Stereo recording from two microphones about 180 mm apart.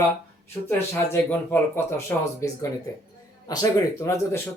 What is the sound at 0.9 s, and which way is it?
Speech, 10° left (ahead or behind).